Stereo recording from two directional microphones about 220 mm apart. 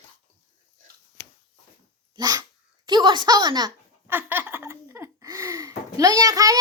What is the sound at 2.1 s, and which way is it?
A child's voice, 15° right (ahead or behind).